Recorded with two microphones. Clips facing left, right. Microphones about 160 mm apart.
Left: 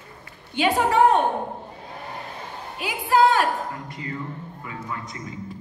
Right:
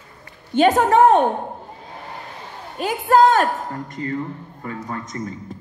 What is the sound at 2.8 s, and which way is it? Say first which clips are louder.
A woman's voice: right 4 dB; 45° right (ahead or behind).